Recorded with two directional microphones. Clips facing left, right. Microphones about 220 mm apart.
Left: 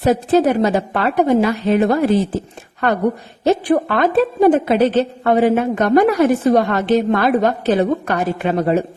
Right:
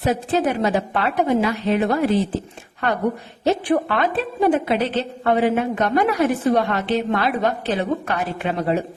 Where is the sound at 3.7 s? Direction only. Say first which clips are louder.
Left 5 dB; 45° left (ahead or behind).